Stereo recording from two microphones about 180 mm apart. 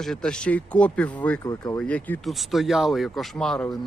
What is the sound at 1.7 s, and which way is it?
Speech, 10° left (ahead or behind).